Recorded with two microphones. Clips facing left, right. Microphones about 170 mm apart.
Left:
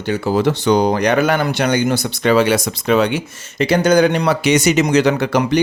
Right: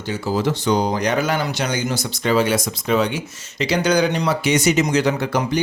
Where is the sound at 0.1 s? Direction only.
65° left (ahead or behind).